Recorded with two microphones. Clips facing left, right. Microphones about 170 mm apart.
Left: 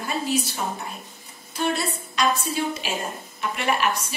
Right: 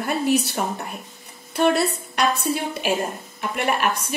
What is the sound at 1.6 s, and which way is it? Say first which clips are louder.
Speech: right 6 dB; 65° right (ahead or behind).